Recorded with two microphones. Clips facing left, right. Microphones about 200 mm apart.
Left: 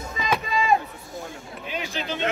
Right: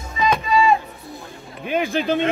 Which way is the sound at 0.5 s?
50° left (ahead or behind).